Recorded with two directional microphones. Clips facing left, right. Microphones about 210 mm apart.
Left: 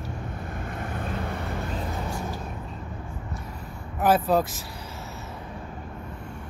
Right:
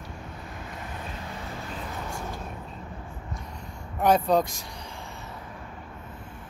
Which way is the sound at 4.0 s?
5° left (ahead or behind).